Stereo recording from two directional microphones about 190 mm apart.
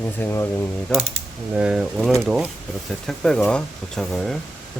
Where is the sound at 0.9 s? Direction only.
5° left (ahead or behind).